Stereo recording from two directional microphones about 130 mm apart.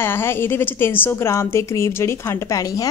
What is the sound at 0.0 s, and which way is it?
A woman's voice, 20° left (ahead or behind).